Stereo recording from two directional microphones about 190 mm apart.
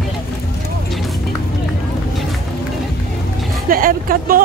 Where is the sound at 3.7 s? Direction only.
50° right (ahead or behind).